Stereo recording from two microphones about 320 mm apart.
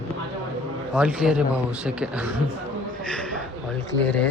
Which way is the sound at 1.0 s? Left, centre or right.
Centre.